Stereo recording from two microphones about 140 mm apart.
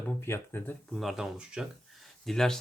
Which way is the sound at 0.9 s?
Centre (ahead or behind).